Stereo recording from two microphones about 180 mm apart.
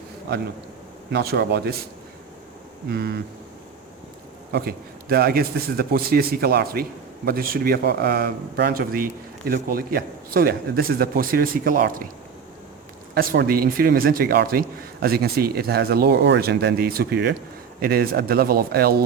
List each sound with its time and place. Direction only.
1.1 s speech: 60° right (ahead or behind)
2.9 s speech: 60° right (ahead or behind)
4.5 s a man's voice: 60° right (ahead or behind)
13.1 s speech: 60° right (ahead or behind)